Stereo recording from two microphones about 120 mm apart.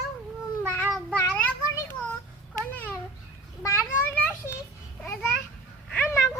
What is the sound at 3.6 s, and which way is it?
Children playing, 25° left (ahead or behind).